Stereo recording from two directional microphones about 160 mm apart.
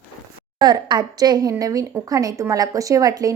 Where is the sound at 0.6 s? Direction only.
25° right (ahead or behind).